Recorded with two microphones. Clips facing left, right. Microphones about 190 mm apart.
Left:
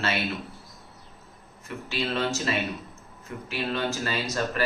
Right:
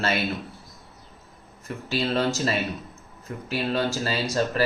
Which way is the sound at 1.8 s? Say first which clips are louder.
Right 4 dB; 40° right (ahead or behind).